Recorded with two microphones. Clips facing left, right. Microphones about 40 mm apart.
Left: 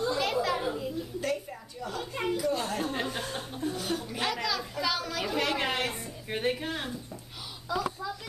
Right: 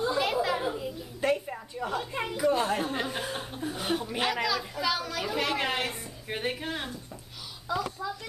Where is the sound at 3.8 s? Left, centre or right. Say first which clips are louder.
Right 3 dB; right.